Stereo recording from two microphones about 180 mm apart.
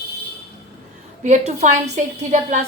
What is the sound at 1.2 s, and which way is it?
A woman's voice, 40° right (ahead or behind).